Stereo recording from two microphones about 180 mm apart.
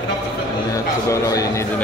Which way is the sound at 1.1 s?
20° left (ahead or behind).